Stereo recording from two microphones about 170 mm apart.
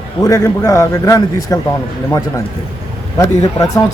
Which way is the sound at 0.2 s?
20° left (ahead or behind).